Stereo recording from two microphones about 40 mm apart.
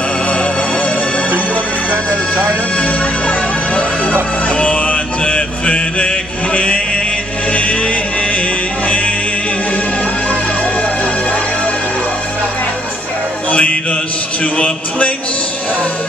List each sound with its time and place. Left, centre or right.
0.3 s music: left
1.9 s music: right
2.8 s music: left
13.5 s mantra: left
14.4 s a man's voice: left